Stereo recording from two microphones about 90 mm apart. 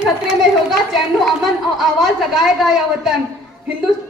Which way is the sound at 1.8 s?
Centre (ahead or behind).